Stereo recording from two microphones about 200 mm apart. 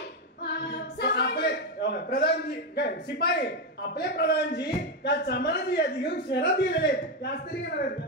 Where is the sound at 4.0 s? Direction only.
55° left (ahead or behind).